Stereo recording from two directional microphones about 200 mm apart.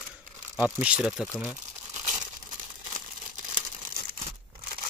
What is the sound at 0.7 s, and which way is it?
Speech, 5° right (ahead or behind).